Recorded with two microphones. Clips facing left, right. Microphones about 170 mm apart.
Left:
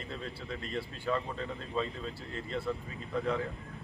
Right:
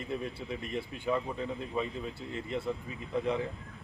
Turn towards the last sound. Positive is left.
turn(degrees=-20)  # may be behind; listen again after turning